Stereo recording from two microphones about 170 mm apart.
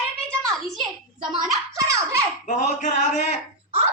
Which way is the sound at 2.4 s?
45° left (ahead or behind).